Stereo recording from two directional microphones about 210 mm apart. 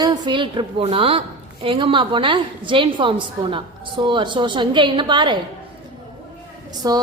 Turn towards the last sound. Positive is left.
turn(degrees=-20)  # may be behind; listen again after turning